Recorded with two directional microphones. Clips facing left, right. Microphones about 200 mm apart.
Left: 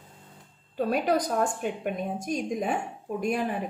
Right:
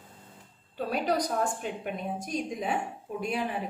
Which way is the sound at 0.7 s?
50° left (ahead or behind).